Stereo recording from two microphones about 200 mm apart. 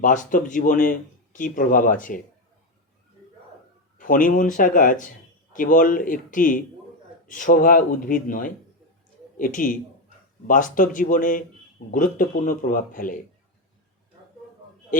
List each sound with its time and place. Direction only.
0.0 s speech: 40° left (ahead or behind)
3.9 s speech: 45° left (ahead or behind)